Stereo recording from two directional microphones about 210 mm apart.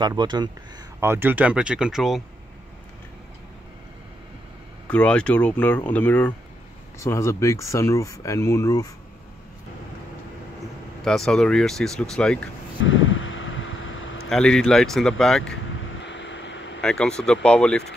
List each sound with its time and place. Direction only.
0.0 s speech: 20° right (ahead or behind)
1.0 s speech: 10° right (ahead or behind)
4.8 s speech: 5° left (ahead or behind)
11.1 s speech: centre (ahead or behind)
12.8 s a sound: 65° left (ahead or behind)
14.3 s speech: 5° left (ahead or behind)
16.0 s vehicle: 60° left (ahead or behind)
16.8 s speech: 5° left (ahead or behind)